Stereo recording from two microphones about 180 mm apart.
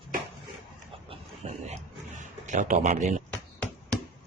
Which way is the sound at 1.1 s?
35° right (ahead or behind).